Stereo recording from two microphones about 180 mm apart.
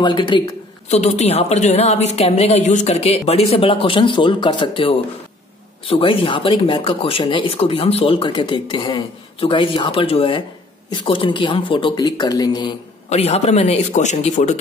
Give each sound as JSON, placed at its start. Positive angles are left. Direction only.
{"t": 0.0, "sound": "speech", "side_deg": 25}
{"t": 0.8, "sound": "a woman's voice", "side_deg": 40}
{"t": 13.1, "sound": "a woman's voice", "side_deg": 35}